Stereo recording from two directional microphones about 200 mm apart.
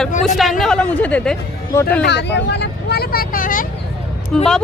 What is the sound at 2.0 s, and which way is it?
Speech, 60° left (ahead or behind).